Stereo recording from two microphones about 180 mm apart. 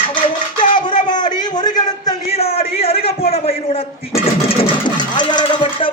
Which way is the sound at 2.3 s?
35° left (ahead or behind).